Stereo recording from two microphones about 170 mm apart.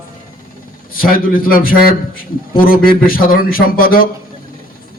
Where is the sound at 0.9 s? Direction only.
55° left (ahead or behind).